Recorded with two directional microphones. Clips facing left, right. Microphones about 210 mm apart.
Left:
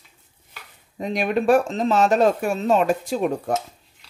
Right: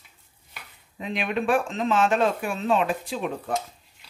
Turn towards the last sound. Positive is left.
turn(degrees=45)  # may be behind; listen again after turning